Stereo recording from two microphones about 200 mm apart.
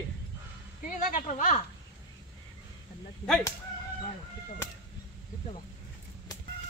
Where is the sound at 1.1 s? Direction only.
40° left (ahead or behind).